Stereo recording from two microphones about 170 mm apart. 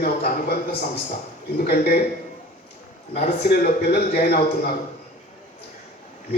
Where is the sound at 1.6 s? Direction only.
65° left (ahead or behind).